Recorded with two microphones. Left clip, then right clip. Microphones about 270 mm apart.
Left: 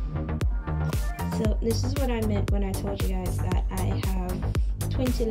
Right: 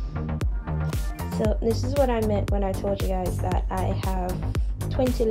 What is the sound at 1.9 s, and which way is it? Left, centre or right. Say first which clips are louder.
Speech: right 7 dB; centre.